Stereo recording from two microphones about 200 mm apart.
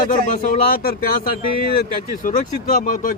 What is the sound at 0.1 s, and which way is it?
Speech, 40° left (ahead or behind).